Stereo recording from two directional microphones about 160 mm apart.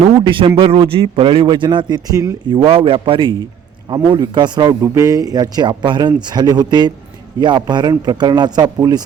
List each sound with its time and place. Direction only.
0.0 s a man's voice: 35° right (ahead or behind)
2.6 s a man's voice: 35° right (ahead or behind)